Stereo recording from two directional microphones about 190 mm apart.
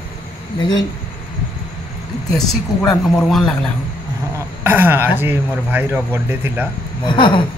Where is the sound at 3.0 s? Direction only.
Centre (ahead or behind).